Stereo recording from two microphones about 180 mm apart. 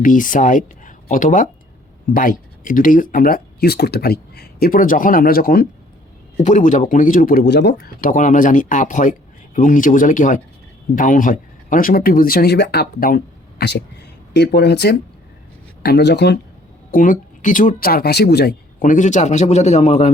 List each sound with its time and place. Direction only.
0.0 s speech: 50° left (ahead or behind)
6.3 s speech: 40° left (ahead or behind); by 8.1 s 70° left (ahead or behind)
8.1 s speech: 45° left (ahead or behind); by 16.4 s 70° left (ahead or behind)
16.9 s speech: 50° left (ahead or behind)